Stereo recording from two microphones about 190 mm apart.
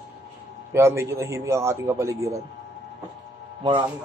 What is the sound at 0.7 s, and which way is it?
A man's voice, 15° right (ahead or behind).